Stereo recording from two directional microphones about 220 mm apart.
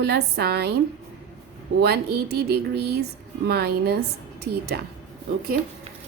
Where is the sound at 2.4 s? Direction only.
50° right (ahead or behind).